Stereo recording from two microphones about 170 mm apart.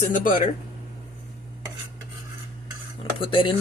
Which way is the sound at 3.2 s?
30° left (ahead or behind).